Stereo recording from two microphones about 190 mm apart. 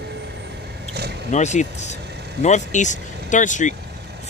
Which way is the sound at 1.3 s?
40° left (ahead or behind).